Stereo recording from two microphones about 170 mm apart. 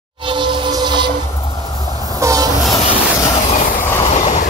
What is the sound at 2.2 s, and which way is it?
Train, 20° right (ahead or behind).